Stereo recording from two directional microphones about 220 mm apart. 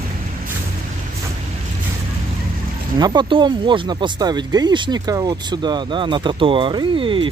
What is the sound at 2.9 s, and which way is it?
Speech, 20° right (ahead or behind).